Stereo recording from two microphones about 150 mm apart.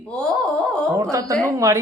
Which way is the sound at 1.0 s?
20° right (ahead or behind).